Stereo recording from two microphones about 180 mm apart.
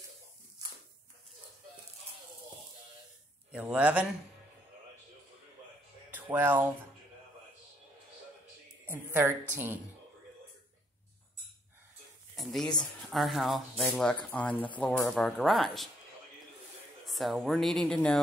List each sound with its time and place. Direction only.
3.5 s a woman's voice: 5° right (ahead or behind)
6.3 s a woman's voice: 10° right (ahead or behind)
8.9 s a woman's voice: 10° right (ahead or behind)
12.4 s speech: centre (ahead or behind)
14.5 s speech: 30° left (ahead or behind)
14.8 s speech: 5° left (ahead or behind)
17.0 s speech: centre (ahead or behind)